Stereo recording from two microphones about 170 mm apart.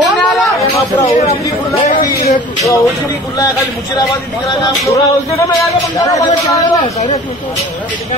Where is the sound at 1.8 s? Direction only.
40° left (ahead or behind).